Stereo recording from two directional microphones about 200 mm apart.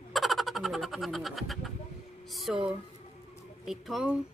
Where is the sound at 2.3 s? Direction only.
Centre (ahead or behind).